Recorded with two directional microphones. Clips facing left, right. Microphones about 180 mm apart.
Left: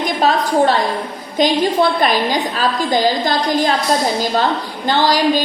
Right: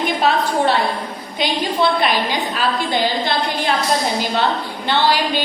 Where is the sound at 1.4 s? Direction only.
45° left (ahead or behind).